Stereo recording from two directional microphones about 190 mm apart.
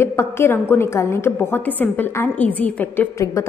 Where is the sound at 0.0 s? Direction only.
15° left (ahead or behind).